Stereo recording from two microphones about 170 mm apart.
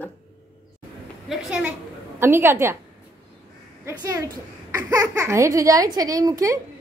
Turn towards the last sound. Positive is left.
turn(degrees=-20)  # may be behind; listen again after turning